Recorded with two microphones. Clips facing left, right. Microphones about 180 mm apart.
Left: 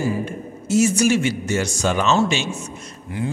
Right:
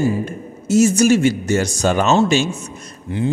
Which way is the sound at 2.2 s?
40° right (ahead or behind).